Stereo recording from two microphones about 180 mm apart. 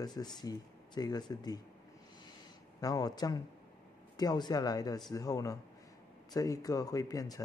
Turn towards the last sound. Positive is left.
turn(degrees=20)  # may be behind; listen again after turning